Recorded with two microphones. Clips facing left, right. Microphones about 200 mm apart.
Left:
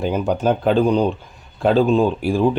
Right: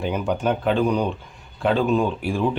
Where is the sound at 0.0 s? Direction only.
35° left (ahead or behind).